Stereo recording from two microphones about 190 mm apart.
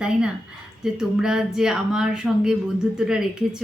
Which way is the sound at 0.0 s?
5° right (ahead or behind).